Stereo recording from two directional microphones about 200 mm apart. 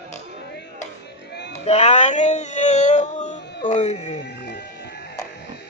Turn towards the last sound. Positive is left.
turn(degrees=55)  # may be behind; listen again after turning